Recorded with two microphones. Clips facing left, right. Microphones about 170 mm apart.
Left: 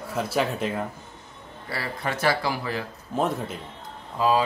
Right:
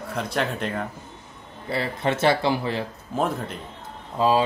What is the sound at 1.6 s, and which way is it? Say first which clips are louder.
Speech: right 5 dB; 25° right (ahead or behind).